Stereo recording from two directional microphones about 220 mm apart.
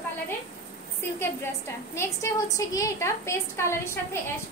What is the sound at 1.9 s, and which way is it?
A woman's voice, 15° left (ahead or behind).